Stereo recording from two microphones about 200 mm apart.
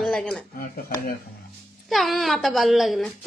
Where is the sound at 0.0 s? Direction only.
5° left (ahead or behind).